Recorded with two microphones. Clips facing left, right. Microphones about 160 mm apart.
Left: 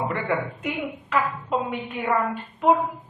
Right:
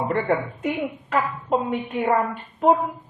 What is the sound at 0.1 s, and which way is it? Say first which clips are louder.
A man's voice: right 4 dB; 45° right (ahead or behind).